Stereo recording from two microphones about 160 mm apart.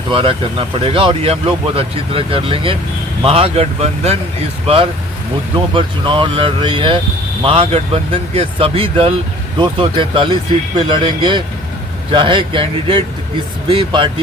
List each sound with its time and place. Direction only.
0.1 s speech: 30° right (ahead or behind)